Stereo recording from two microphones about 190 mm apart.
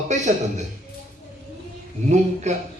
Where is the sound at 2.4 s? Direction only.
35° right (ahead or behind).